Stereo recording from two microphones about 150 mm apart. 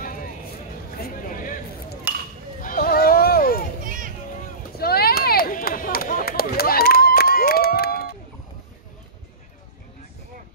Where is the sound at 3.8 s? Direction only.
65° right (ahead or behind).